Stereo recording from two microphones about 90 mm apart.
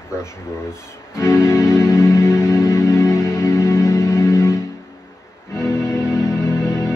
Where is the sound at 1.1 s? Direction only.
30° left (ahead or behind).